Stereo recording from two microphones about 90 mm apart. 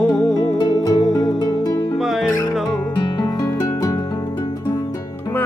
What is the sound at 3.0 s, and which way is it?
Music, 50° left (ahead or behind).